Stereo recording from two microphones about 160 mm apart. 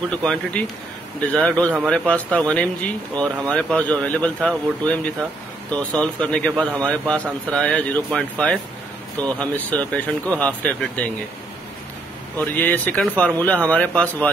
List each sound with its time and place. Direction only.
0.2 s speech: 5° left (ahead or behind)
12.4 s speech: 10° left (ahead or behind)